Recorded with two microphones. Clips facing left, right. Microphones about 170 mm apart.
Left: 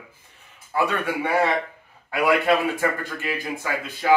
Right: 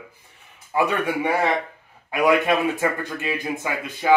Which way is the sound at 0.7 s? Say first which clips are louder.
Right 2 dB; 15° right (ahead or behind).